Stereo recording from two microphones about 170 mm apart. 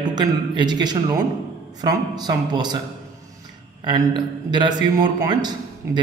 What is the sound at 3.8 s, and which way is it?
A man's voice, 25° right (ahead or behind).